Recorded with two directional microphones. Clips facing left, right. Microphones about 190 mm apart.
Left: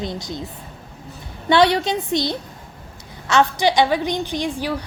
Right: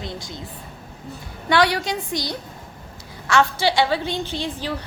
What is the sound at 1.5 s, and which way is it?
A woman's voice, 25° left (ahead or behind).